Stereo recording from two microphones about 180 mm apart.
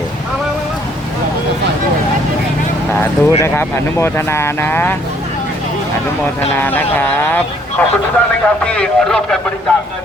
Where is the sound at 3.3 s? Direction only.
15° left (ahead or behind).